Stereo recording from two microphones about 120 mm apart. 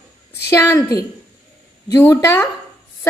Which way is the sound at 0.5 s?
25° left (ahead or behind).